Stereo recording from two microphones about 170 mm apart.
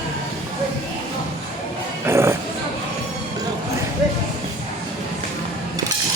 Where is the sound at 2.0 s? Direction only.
15° right (ahead or behind).